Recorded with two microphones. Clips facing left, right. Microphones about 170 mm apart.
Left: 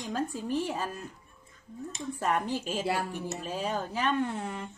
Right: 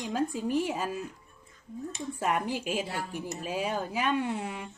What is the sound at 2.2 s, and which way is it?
Cutlery, 10° right (ahead or behind).